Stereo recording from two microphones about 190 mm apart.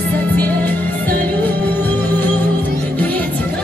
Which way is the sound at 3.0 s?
10° left (ahead or behind).